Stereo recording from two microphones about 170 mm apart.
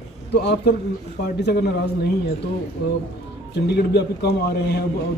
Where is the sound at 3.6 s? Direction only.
75° left (ahead or behind).